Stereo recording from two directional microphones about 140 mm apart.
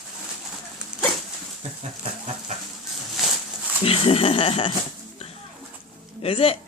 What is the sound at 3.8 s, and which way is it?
Speech, 40° left (ahead or behind).